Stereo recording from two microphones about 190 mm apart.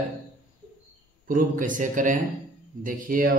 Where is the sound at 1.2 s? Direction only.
45° right (ahead or behind).